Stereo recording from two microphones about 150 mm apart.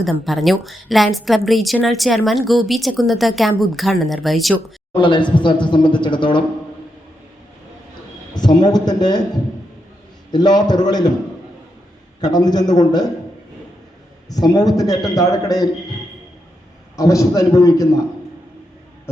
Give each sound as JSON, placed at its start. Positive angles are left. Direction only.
{"t": 0.0, "sound": "a woman's voice", "side_deg": 0}
{"t": 4.9, "sound": "a man's voice", "side_deg": 30}
{"t": 8.3, "sound": "a man's voice", "side_deg": 30}
{"t": 10.3, "sound": "a man's voice", "side_deg": 30}
{"t": 12.2, "sound": "a man's voice", "side_deg": 25}
{"t": 14.3, "sound": "a man's voice", "side_deg": 25}
{"t": 17.0, "sound": "a man's voice", "side_deg": 20}